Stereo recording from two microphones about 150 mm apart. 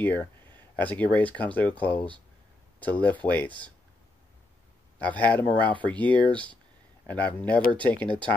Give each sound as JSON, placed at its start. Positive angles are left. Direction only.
{"t": 0.0, "sound": "speech", "side_deg": 15}
{"t": 4.9, "sound": "speech", "side_deg": 10}